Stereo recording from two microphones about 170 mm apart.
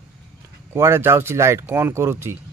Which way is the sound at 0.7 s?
15° right (ahead or behind).